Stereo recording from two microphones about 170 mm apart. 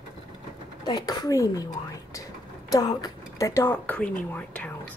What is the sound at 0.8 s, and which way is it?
A woman's voice, 25° left (ahead or behind).